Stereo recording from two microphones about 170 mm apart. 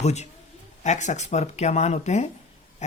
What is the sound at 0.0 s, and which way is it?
Speech, 40° left (ahead or behind).